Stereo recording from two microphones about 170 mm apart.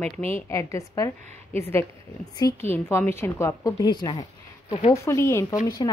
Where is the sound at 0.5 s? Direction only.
15° left (ahead or behind).